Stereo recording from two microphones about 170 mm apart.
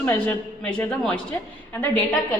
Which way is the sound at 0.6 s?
5° left (ahead or behind).